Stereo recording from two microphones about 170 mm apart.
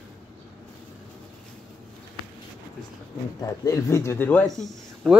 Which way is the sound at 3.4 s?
20° left (ahead or behind).